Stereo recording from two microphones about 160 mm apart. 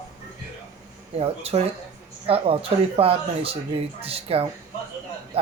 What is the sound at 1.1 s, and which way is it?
Speech, 40° right (ahead or behind).